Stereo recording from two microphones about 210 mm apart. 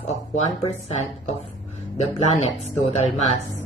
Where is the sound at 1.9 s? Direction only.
30° left (ahead or behind).